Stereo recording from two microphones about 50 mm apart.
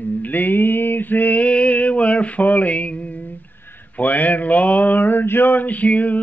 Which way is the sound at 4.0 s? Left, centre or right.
Left.